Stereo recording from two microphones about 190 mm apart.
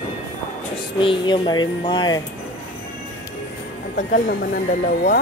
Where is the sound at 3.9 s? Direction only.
40° left (ahead or behind).